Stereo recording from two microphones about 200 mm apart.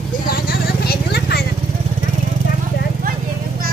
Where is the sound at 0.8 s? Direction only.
55° left (ahead or behind).